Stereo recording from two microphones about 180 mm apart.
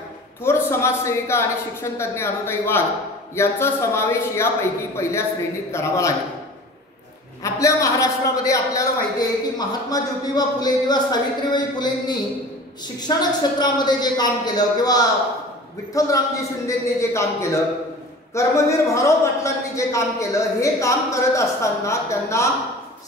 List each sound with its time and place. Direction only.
0.4 s a man's voice: 15° left (ahead or behind)
5.7 s a man's voice: 15° left (ahead or behind)
7.4 s a man's voice: 15° left (ahead or behind)